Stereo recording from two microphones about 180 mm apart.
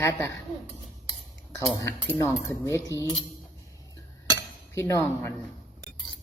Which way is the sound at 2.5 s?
15° left (ahead or behind).